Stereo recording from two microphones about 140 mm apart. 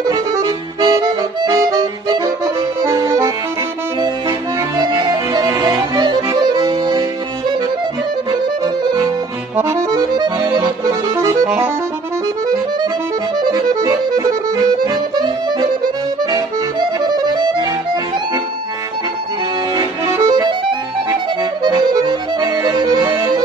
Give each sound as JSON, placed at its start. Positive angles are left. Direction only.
{"t": 0.1, "sound": "accordion", "side_deg": -25}
{"t": 4.0, "sound": "music", "side_deg": -30}
{"t": 9.6, "sound": "accordion", "side_deg": -20}
{"t": 11.4, "sound": "music", "side_deg": -10}
{"t": 13.5, "sound": "accordion", "side_deg": -25}
{"t": 17.0, "sound": "accordion", "side_deg": -30}
{"t": 19.7, "sound": "accordion", "side_deg": -30}